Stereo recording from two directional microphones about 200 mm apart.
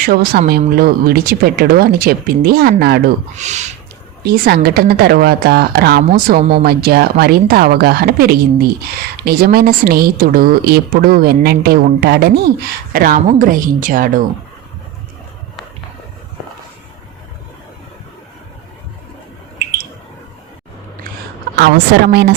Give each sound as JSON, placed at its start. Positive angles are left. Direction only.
{"t": 0.0, "sound": "a woman's voice", "side_deg": -50}
{"t": 3.3, "sound": "speech", "side_deg": -35}
{"t": 4.2, "sound": "a woman's voice", "side_deg": -50}
{"t": 21.5, "sound": "a woman's voice", "side_deg": -55}